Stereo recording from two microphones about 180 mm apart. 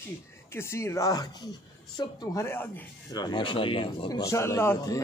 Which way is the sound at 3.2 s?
25° left (ahead or behind).